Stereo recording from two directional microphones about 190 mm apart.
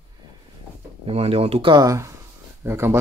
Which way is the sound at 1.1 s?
30° right (ahead or behind).